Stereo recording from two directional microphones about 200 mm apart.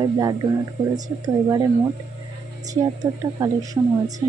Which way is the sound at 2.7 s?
20° right (ahead or behind).